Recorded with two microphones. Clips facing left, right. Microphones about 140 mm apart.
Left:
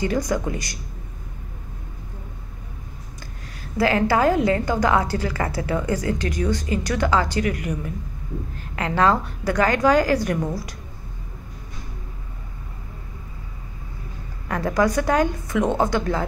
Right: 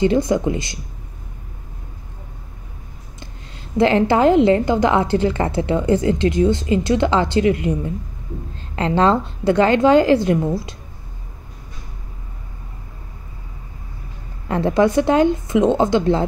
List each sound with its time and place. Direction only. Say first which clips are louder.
0.0 s a woman's voice: right 6 dB; 25° right (ahead or behind)
3.6 s a woman's voice: right 5 dB; 25° right (ahead or behind)
14.5 s a woman's voice: right 5 dB; 25° right (ahead or behind)